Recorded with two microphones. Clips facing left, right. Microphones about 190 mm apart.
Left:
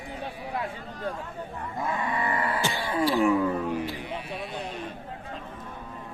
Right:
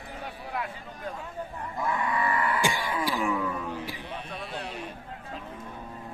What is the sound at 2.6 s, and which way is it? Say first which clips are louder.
Throat clearing: right 1 dB; 15° right (ahead or behind).